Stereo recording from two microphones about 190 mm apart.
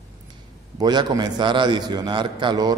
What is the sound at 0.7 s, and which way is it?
A man's voice, 20° right (ahead or behind).